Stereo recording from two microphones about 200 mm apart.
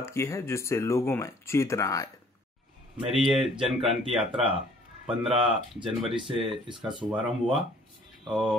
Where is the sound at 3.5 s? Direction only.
25° right (ahead or behind).